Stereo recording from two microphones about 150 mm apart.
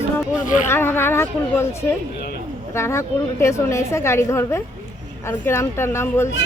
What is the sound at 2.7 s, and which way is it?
A woman's voice, 20° left (ahead or behind).